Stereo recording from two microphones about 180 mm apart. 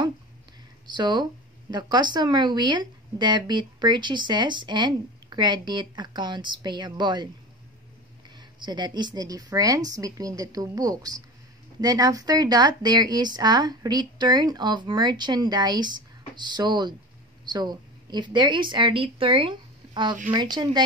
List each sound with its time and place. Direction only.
0.8 s speech: 25° right (ahead or behind)
8.4 s a woman's voice: 25° right (ahead or behind)